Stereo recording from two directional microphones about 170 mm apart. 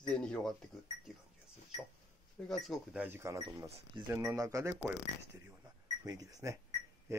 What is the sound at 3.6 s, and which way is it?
Speech, 35° right (ahead or behind).